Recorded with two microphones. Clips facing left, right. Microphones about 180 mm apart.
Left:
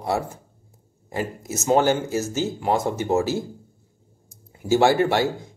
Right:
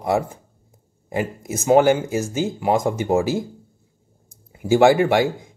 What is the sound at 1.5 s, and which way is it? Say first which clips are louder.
Speech: right 4 dB; 55° right (ahead or behind).